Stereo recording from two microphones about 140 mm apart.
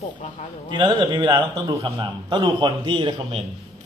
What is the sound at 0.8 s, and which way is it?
A man's voice, 35° right (ahead or behind).